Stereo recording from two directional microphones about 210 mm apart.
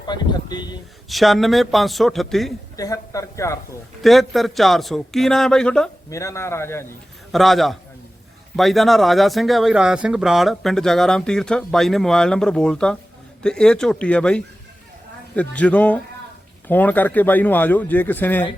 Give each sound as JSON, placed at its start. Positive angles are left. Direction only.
{"t": 0.1, "sound": "speech", "side_deg": 20}
{"t": 1.0, "sound": "speech", "side_deg": 0}
{"t": 2.7, "sound": "speech", "side_deg": 15}
{"t": 4.0, "sound": "speech", "side_deg": 0}
{"t": 6.1, "sound": "speech", "side_deg": 15}
{"t": 7.3, "sound": "speech", "side_deg": 0}